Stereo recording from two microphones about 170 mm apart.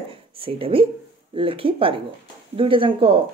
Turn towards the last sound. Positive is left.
turn(degrees=-30)  # may be behind; listen again after turning